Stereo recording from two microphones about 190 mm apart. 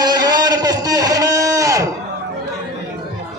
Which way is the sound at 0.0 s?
20° right (ahead or behind).